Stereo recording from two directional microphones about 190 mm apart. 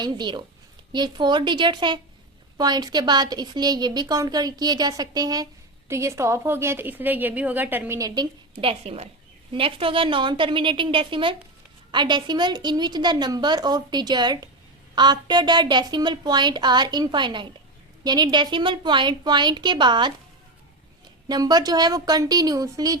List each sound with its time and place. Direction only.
0.0 s a woman's voice: 25° right (ahead or behind)
21.2 s a woman's voice: 20° right (ahead or behind)